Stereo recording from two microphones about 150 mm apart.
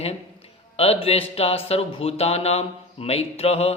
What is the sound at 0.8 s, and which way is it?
Speech, 40° left (ahead or behind).